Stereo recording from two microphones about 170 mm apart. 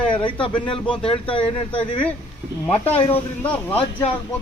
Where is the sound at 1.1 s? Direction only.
30° left (ahead or behind).